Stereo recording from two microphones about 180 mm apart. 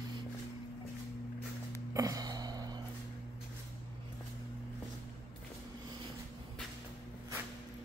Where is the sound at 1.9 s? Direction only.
20° right (ahead or behind).